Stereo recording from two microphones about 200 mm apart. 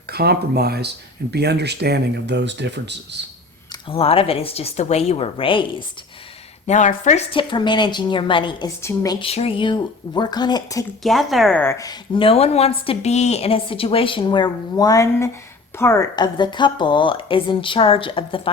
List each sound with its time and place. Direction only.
0.1 s speech: 50° right (ahead or behind)
3.7 s a woman's voice: 30° left (ahead or behind)
6.7 s a woman's voice: 35° left (ahead or behind); by 9.1 s 15° left (ahead or behind)
9.2 s a woman's voice: 30° left (ahead or behind)
11.0 s a woman's voice: centre (ahead or behind); by 18.5 s 25° left (ahead or behind)